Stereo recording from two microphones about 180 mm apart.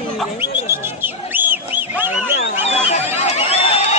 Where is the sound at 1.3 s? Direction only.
10° right (ahead or behind).